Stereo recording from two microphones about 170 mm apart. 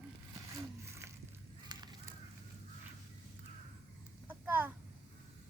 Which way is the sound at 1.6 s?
25° right (ahead or behind).